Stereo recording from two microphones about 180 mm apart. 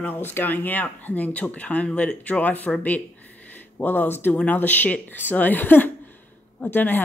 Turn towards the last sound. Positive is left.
turn(degrees=10)  # may be behind; listen again after turning